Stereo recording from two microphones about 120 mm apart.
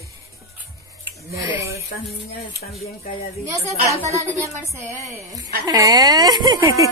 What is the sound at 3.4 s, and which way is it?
A woman's voice, 25° right (ahead or behind).